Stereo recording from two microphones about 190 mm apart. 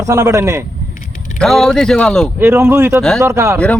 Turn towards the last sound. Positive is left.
turn(degrees=5)  # may be behind; listen again after turning